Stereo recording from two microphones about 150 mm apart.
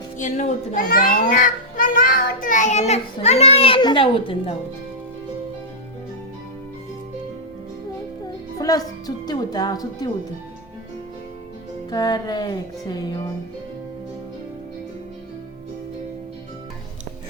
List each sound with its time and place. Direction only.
0.2 s a child's voice: 55° left (ahead or behind); by 4.5 s 35° left (ahead or behind)
8.5 s a woman's voice: 25° left (ahead or behind)
11.9 s music: 25° left (ahead or behind)